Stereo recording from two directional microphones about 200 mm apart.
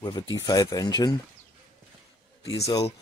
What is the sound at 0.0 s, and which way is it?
Speech, 20° left (ahead or behind).